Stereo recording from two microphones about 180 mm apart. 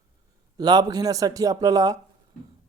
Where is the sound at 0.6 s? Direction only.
20° right (ahead or behind).